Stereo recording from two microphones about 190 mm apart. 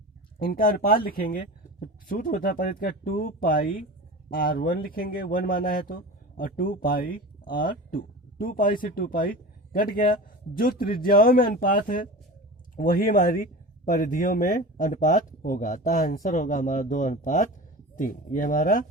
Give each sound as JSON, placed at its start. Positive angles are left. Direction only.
{"t": 0.4, "sound": "speech", "side_deg": 50}